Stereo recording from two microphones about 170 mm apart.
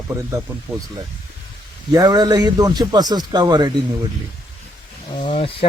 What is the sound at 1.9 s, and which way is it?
Speech, 25° right (ahead or behind).